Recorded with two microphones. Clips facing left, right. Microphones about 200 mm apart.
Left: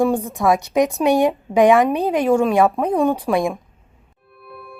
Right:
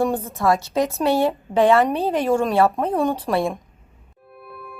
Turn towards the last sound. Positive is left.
turn(degrees=0)  # may be behind; listen again after turning